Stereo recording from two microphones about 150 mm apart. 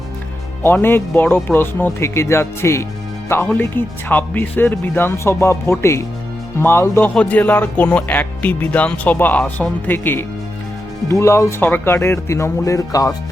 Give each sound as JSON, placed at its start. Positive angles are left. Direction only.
{"t": 0.6, "sound": "speech", "side_deg": 15}